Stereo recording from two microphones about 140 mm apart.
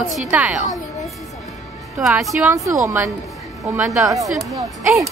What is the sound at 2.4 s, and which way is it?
A woman's voice, 20° right (ahead or behind).